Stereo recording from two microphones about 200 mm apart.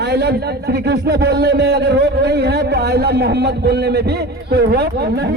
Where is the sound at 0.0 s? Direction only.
55° right (ahead or behind).